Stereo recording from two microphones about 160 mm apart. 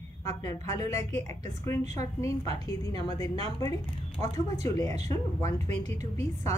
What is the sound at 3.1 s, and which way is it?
A woman's voice, 25° left (ahead or behind).